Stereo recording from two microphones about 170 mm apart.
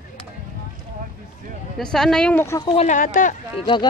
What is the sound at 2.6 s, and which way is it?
Speech, 30° left (ahead or behind).